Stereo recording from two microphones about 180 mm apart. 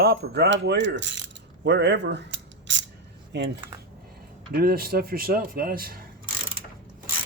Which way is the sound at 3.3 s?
70° right (ahead or behind).